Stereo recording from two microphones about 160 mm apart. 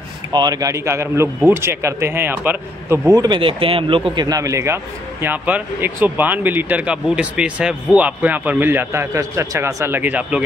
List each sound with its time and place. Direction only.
0.3 s speech: 25° right (ahead or behind)
3.2 s speech: 30° right (ahead or behind); by 10.4 s 10° right (ahead or behind)